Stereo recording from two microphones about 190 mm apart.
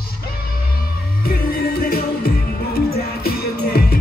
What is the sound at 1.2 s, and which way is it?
Music, 50° left (ahead or behind).